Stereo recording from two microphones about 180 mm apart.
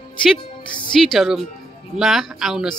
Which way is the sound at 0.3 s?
Centre (ahead or behind).